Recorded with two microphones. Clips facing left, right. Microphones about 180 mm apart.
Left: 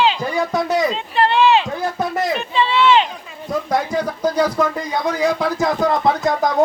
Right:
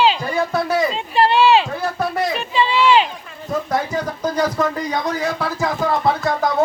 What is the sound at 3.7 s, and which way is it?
Speech, 10° left (ahead or behind).